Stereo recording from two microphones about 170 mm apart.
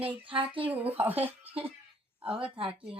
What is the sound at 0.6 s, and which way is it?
A woman's voice, 10° right (ahead or behind).